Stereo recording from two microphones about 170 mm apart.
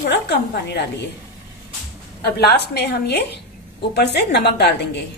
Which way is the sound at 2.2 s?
70° left (ahead or behind).